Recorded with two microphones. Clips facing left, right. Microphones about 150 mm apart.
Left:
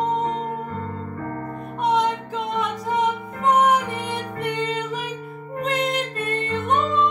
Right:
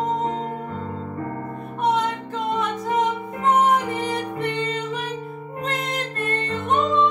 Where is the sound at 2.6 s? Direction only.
Centre (ahead or behind).